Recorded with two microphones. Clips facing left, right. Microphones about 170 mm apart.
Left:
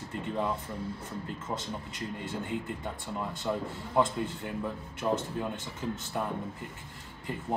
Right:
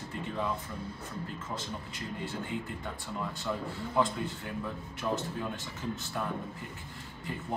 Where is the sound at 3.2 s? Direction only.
10° left (ahead or behind).